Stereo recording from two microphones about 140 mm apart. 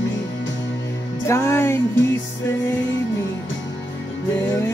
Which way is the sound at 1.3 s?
15° left (ahead or behind).